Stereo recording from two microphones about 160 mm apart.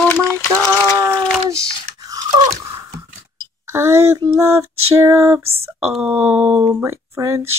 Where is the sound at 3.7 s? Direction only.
15° right (ahead or behind).